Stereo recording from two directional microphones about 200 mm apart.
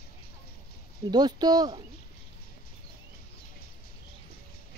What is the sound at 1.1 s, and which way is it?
Speech, 20° right (ahead or behind).